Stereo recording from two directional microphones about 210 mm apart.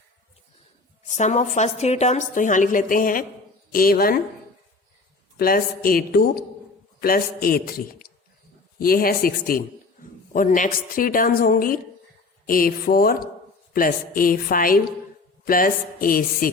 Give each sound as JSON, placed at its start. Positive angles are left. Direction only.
{"t": 1.0, "sound": "a woman's voice", "side_deg": 35}
{"t": 5.4, "sound": "a man's voice", "side_deg": 45}